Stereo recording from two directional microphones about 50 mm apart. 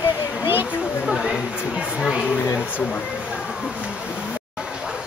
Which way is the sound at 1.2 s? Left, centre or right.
Centre.